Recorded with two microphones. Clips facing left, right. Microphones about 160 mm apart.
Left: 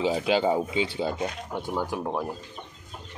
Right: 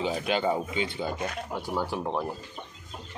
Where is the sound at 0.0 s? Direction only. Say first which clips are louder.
Left 4 dB; 25° left (ahead or behind).